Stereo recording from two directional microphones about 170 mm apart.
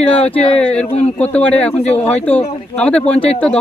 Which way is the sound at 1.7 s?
40° left (ahead or behind).